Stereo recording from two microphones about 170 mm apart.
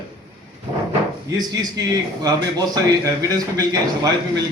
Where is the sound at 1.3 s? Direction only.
25° right (ahead or behind).